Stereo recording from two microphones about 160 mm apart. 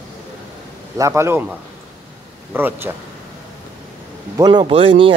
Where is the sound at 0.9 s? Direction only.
15° right (ahead or behind).